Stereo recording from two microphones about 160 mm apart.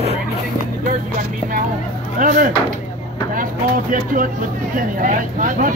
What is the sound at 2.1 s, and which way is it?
Speech, 55° right (ahead or behind).